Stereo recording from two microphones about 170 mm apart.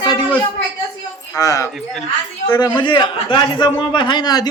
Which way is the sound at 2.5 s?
25° left (ahead or behind).